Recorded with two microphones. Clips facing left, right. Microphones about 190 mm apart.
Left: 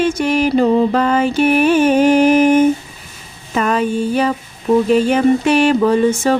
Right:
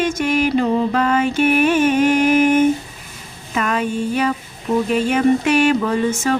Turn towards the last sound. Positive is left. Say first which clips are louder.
# left 5 dB
turn(degrees=30)  # may be behind; listen again after turning